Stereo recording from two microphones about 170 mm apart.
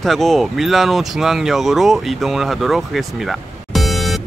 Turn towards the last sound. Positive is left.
turn(degrees=0)  # may be behind; listen again after turning